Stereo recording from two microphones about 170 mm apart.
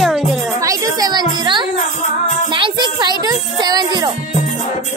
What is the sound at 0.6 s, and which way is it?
Music, 20° right (ahead or behind).